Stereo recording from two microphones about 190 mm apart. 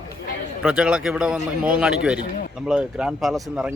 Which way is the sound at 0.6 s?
5° right (ahead or behind).